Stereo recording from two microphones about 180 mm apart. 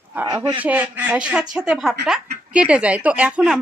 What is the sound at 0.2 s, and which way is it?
A man's voice, 20° right (ahead or behind).